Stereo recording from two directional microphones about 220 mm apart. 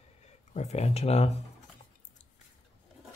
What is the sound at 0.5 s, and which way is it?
Speech, 30° left (ahead or behind).